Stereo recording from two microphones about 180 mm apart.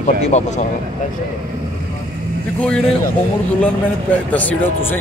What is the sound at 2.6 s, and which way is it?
Speech, 5° left (ahead or behind).